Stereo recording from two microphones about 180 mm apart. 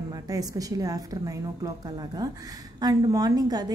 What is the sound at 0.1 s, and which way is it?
A woman's voice, 20° right (ahead or behind).